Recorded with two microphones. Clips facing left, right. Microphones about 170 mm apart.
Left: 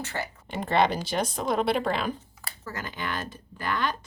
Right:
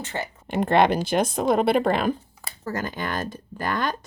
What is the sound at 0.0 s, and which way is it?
Speech, 20° right (ahead or behind).